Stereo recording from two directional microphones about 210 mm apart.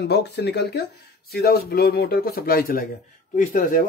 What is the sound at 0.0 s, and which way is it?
A man's voice, 55° left (ahead or behind).